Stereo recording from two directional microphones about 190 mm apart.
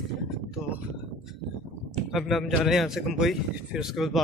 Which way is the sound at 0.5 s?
5° right (ahead or behind).